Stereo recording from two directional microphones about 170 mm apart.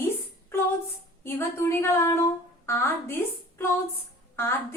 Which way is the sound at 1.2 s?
15° left (ahead or behind).